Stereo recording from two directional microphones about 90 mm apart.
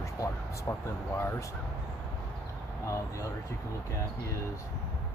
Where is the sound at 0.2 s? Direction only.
40° left (ahead or behind).